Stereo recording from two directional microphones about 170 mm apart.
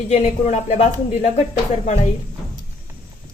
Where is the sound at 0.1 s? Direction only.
45° left (ahead or behind).